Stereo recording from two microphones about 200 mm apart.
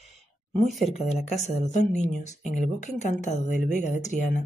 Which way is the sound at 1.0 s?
35° left (ahead or behind).